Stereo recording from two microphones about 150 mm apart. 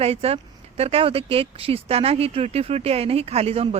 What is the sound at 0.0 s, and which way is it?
Speech, 40° right (ahead or behind).